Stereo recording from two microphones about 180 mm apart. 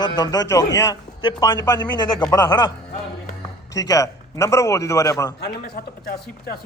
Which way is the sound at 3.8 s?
20° left (ahead or behind).